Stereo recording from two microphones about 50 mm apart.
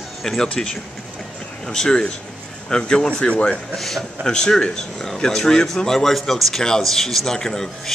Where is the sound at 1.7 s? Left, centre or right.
Centre.